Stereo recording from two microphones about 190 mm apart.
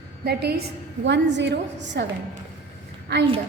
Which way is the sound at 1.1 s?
70° right (ahead or behind).